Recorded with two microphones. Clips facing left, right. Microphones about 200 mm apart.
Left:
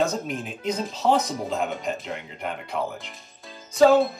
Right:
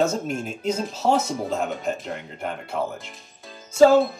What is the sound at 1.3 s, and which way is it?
Speech, centre (ahead or behind).